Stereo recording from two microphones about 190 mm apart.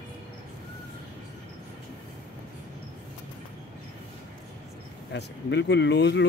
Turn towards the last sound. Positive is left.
turn(degrees=65)  # may be behind; listen again after turning